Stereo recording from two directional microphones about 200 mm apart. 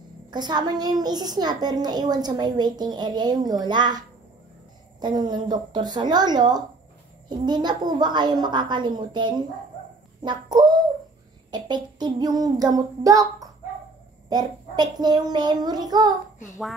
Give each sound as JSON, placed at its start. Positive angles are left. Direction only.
{"t": 0.3, "sound": "a woman's voice", "side_deg": -20}
{"t": 5.0, "sound": "a woman's voice", "side_deg": -20}
{"t": 10.2, "sound": "a sound", "side_deg": -20}
{"t": 11.5, "sound": "a woman's voice", "side_deg": -20}